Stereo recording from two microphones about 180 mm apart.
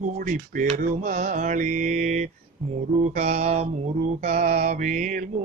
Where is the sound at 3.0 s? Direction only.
40° right (ahead or behind).